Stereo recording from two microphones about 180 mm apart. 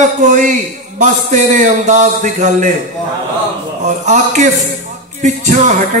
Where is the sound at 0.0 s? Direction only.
45° right (ahead or behind).